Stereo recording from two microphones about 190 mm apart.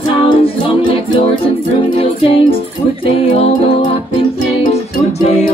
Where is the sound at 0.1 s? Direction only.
30° left (ahead or behind).